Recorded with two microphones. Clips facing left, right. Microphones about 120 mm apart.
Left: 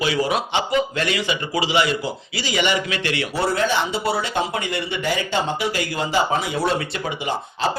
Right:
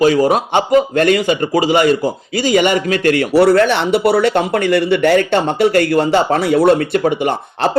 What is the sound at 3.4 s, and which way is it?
Speech, 70° right (ahead or behind).